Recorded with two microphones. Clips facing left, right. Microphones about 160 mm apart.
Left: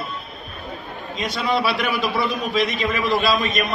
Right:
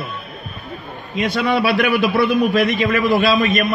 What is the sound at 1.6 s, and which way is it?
Speech, 60° right (ahead or behind).